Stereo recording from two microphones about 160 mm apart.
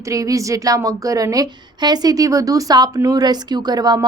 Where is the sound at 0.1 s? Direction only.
20° right (ahead or behind).